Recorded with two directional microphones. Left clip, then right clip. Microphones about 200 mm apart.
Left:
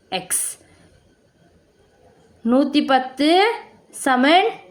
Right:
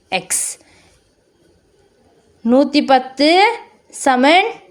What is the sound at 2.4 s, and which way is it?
A woman's voice, 25° right (ahead or behind).